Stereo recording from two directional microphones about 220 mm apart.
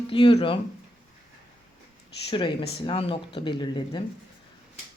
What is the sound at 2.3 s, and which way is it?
Speech, 20° left (ahead or behind).